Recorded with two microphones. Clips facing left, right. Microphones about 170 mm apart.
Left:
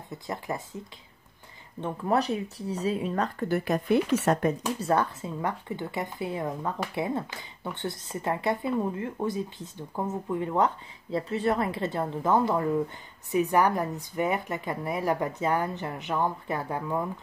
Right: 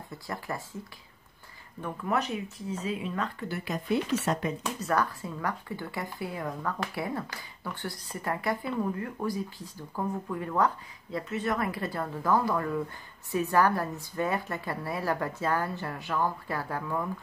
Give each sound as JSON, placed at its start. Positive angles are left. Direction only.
{"t": 0.1, "sound": "speech", "side_deg": 20}
{"t": 1.8, "sound": "speech", "side_deg": 25}
{"t": 4.7, "sound": "speech", "side_deg": 25}